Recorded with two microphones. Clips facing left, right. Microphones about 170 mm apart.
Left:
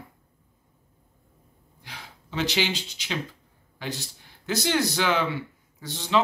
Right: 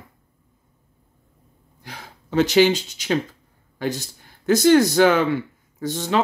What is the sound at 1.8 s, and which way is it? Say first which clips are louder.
A man's voice: right 5 dB; 45° right (ahead or behind).